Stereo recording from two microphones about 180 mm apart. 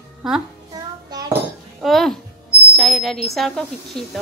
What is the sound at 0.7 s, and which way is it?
Child singing, 20° right (ahead or behind).